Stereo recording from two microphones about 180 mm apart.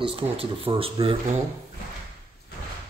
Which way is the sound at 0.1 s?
30° right (ahead or behind).